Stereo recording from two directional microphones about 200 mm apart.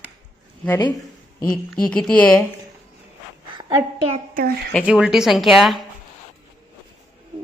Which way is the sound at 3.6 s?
20° right (ahead or behind).